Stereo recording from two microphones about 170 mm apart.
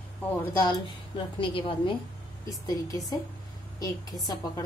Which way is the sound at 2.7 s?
20° left (ahead or behind).